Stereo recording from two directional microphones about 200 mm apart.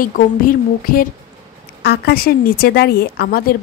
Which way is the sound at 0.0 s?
45° left (ahead or behind).